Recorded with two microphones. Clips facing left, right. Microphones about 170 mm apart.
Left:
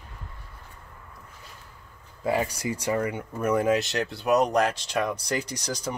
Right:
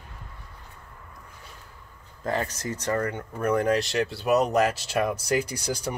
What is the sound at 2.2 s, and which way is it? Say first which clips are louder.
Speech: left 2 dB; 10° left (ahead or behind).